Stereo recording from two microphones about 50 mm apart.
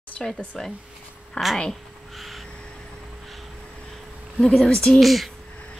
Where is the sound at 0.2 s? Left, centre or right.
Centre.